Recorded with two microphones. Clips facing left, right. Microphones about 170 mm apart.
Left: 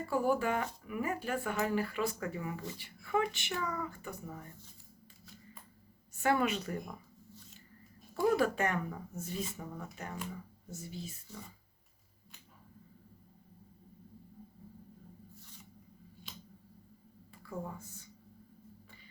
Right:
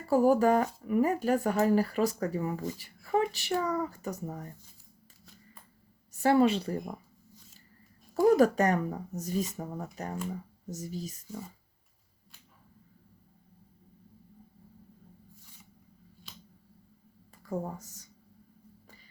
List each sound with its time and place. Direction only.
0.0 s speech: 40° right (ahead or behind)
6.1 s speech: 35° right (ahead or behind)
8.1 s speech: 40° right (ahead or behind)
17.4 s speech: 40° right (ahead or behind)